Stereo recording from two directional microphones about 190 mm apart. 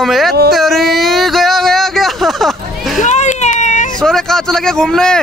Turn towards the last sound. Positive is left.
turn(degrees=5)  # may be behind; listen again after turning